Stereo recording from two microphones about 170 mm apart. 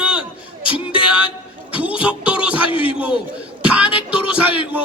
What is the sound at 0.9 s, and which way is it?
Music, 5° right (ahead or behind).